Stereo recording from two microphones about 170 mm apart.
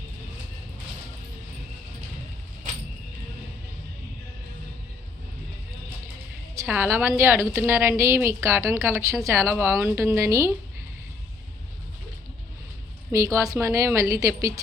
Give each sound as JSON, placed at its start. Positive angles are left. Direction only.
{"t": 6.7, "sound": "a woman's voice", "side_deg": -10}
{"t": 13.1, "sound": "a woman's voice", "side_deg": -15}